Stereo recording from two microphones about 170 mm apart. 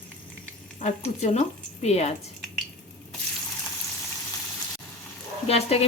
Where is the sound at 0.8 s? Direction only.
40° left (ahead or behind).